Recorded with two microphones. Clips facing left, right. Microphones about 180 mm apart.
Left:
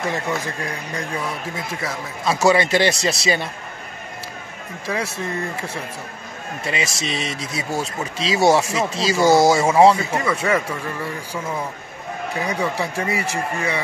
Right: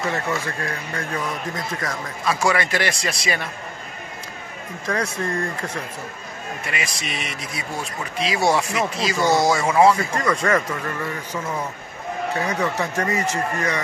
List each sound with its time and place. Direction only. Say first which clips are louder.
0.1 s speech: left 1 dB; 15° left (ahead or behind)
2.4 s speech: left 7 dB; 25° left (ahead or behind)
4.8 s speech: right 1 dB; 5° left (ahead or behind)
6.6 s speech: left 6 dB; 25° left (ahead or behind)
9.9 s speech: even; 5° left (ahead or behind)
12.4 s speech: left 1 dB; 10° left (ahead or behind)